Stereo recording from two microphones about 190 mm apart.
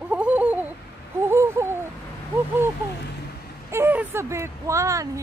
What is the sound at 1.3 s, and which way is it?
Babbling, 15° right (ahead or behind).